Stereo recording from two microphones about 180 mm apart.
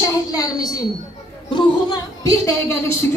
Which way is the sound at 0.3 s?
20° left (ahead or behind).